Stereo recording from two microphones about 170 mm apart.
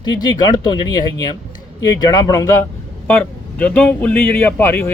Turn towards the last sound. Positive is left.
turn(degrees=15)  # may be behind; listen again after turning